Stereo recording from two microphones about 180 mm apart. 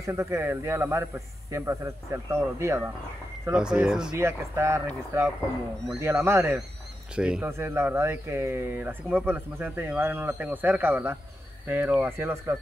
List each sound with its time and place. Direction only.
0.0 s speech: 15° right (ahead or behind)
3.4 s speech: 5° right (ahead or behind)
4.2 s speech: 15° right (ahead or behind)